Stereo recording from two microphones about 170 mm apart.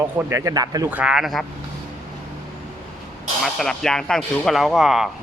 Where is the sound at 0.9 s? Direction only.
5° right (ahead or behind).